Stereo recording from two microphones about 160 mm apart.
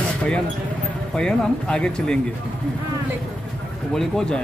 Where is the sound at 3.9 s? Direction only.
5° left (ahead or behind).